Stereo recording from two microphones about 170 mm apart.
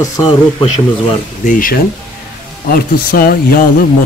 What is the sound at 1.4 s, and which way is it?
A man's voice, 55° left (ahead or behind).